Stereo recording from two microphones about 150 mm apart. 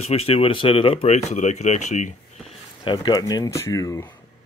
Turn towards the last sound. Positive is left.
turn(degrees=20)  # may be behind; listen again after turning